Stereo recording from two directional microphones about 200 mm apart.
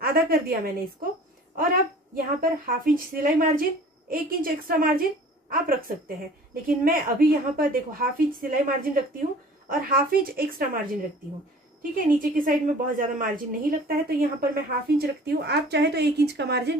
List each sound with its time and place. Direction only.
0.0 s a woman's voice: 45° right (ahead or behind)
1.6 s a woman's voice: 45° right (ahead or behind)
12.2 s a woman's voice: 45° right (ahead or behind)